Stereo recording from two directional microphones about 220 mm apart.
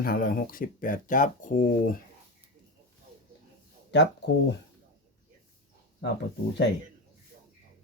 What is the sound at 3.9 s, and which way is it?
Speech, 50° left (ahead or behind).